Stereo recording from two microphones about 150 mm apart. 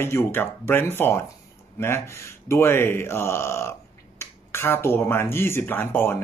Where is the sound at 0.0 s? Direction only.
15° left (ahead or behind).